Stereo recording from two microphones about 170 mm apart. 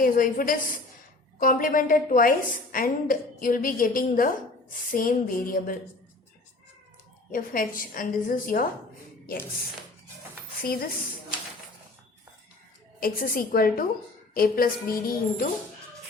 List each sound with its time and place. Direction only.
0.0 s a woman's voice: 55° left (ahead or behind)
7.3 s a woman's voice: 55° left (ahead or behind)
10.6 s a woman's voice: 60° left (ahead or behind)
13.0 s a woman's voice: 60° left (ahead or behind)